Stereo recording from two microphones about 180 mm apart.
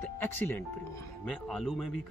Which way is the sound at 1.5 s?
Centre (ahead or behind).